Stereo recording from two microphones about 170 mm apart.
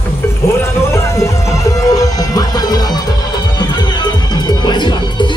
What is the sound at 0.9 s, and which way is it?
Music, 20° left (ahead or behind).